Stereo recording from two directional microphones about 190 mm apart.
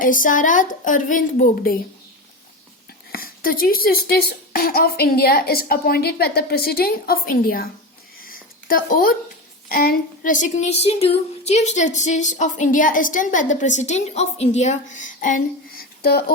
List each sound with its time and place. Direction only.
0.0 s a child's voice: 45° left (ahead or behind)
3.1 s a child's voice: 50° left (ahead or behind)
8.2 s a sound: 50° left (ahead or behind)
9.6 s speech: 50° left (ahead or behind)